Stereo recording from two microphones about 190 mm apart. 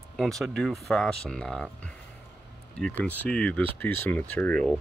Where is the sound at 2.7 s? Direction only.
5° left (ahead or behind).